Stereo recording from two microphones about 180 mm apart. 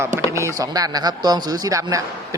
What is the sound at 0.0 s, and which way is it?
Speech, 15° right (ahead or behind).